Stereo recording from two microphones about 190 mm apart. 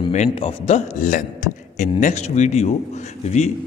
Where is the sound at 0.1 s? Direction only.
35° left (ahead or behind).